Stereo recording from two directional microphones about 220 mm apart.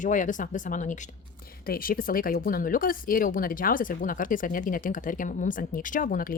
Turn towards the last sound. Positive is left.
turn(degrees=40)  # may be behind; listen again after turning